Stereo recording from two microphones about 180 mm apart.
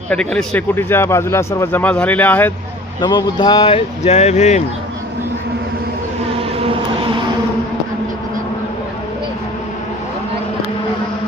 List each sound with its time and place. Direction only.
0.1 s speech: 5° left (ahead or behind)
3.0 s speech: 25° left (ahead or behind); by 4.6 s 40° left (ahead or behind)